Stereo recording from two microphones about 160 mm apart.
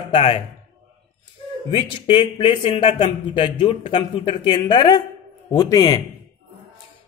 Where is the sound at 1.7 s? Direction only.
30° left (ahead or behind).